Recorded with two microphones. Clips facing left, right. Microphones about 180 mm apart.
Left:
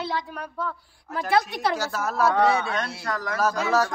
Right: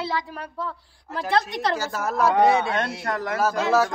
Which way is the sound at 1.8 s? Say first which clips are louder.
Right 1 dB; 10° right (ahead or behind).